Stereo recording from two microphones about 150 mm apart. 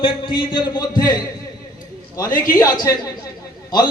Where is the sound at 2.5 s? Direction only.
25° left (ahead or behind).